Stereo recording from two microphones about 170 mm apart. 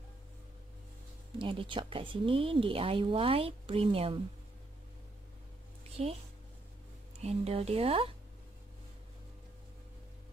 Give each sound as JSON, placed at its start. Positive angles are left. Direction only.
{"t": 1.4, "sound": "speech", "side_deg": -30}
{"t": 5.9, "sound": "a sound", "side_deg": -35}
{"t": 7.2, "sound": "speech", "side_deg": -40}